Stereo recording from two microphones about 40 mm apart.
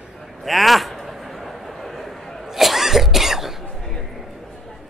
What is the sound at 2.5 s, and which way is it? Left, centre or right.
Cough, centre.